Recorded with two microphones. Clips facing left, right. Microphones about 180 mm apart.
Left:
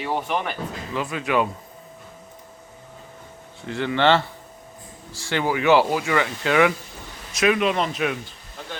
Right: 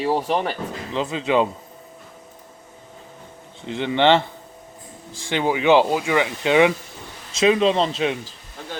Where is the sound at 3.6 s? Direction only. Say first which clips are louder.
Right 2 dB; 20° right (ahead or behind).